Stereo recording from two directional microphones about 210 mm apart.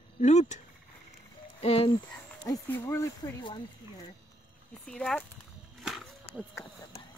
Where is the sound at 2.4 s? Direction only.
15° left (ahead or behind).